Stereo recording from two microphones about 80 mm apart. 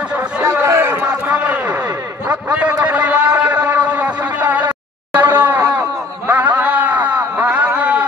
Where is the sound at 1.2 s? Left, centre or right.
Centre.